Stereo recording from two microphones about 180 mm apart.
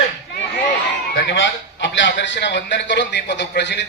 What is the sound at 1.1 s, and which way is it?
A man's voice, 90° left.